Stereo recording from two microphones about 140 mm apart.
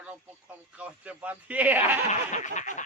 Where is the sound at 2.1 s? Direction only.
60° left (ahead or behind).